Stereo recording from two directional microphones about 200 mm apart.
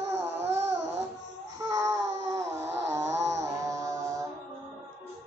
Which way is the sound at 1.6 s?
15° right (ahead or behind).